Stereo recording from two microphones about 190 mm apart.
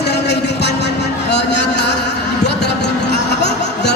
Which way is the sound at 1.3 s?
65° left (ahead or behind).